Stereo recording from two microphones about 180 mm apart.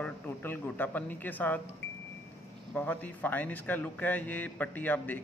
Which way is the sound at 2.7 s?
10° left (ahead or behind).